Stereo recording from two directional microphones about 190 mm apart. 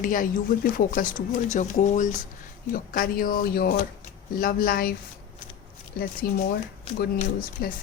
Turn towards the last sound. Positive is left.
turn(degrees=50)  # may be behind; listen again after turning